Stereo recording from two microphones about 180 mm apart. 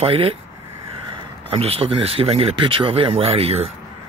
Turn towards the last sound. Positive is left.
turn(degrees=-35)  # may be behind; listen again after turning